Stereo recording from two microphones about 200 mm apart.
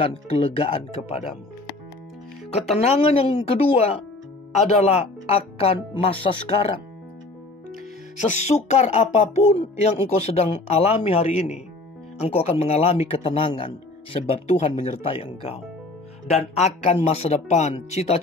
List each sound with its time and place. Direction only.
0.0 s speech: 30° left (ahead or behind)
2.5 s speech: 30° left (ahead or behind)
8.3 s speech: 35° left (ahead or behind)